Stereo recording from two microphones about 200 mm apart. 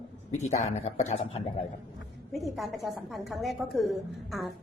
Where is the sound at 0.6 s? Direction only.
35° left (ahead or behind).